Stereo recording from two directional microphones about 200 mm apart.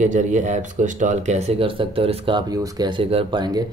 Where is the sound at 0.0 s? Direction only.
35° right (ahead or behind).